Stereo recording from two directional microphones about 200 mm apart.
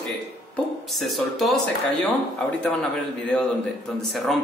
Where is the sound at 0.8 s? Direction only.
Centre (ahead or behind).